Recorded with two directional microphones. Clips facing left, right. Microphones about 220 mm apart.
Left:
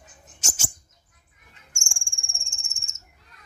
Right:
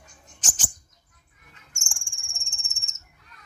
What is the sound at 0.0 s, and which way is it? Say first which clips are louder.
Bird: left 1 dB; 10° left (ahead or behind).